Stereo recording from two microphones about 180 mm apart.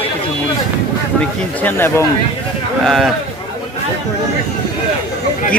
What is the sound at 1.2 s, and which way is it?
Speech, 10° left (ahead or behind).